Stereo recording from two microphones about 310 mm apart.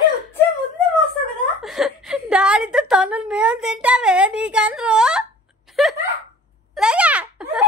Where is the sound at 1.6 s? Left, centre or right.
Centre.